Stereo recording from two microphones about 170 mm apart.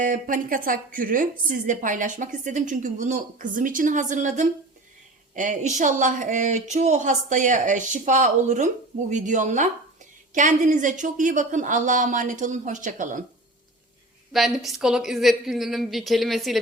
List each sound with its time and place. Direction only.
0.0 s speech: 50° right (ahead or behind)
14.3 s a woman's voice: centre (ahead or behind)